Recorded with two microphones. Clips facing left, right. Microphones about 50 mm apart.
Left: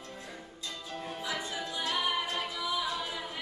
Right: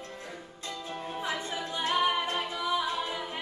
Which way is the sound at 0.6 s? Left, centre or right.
Right.